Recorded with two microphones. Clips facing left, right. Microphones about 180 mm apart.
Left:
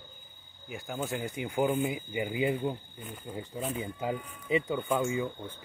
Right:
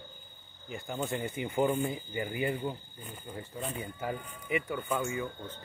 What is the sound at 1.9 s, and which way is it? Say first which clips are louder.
Speech: left 2 dB; 15° left (ahead or behind).